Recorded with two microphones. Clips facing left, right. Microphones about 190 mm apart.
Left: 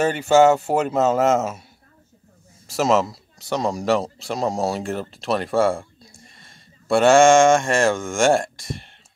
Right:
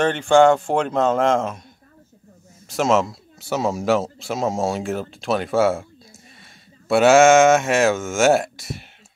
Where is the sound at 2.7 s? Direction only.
Centre (ahead or behind).